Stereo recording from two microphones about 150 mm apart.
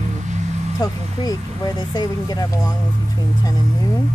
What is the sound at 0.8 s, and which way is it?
Speech, 25° left (ahead or behind).